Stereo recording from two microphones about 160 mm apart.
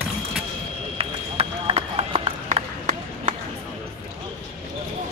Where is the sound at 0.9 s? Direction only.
40° right (ahead or behind).